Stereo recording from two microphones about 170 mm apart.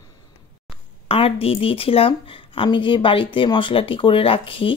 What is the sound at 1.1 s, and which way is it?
A woman's voice, 35° left (ahead or behind).